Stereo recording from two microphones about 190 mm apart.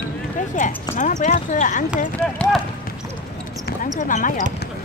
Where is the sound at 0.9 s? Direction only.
40° left (ahead or behind).